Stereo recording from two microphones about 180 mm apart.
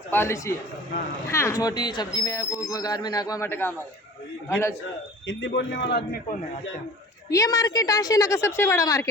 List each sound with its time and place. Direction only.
0.1 s a man's voice: 15° left (ahead or behind)
5.2 s a man's voice: 90° left; by 6.0 s 70° left (ahead or behind)
7.3 s speech: 20° left (ahead or behind)